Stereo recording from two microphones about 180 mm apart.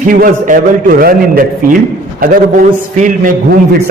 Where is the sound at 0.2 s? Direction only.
50° right (ahead or behind).